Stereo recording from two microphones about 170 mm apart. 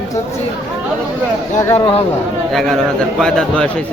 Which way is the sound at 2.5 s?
Centre (ahead or behind).